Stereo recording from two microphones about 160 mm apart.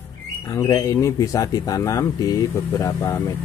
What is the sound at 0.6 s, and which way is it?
Speech, 20° left (ahead or behind).